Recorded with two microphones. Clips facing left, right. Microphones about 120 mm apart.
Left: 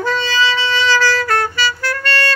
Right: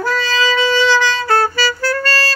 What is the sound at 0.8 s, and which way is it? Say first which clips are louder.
Music: right 1 dB; 15° right (ahead or behind).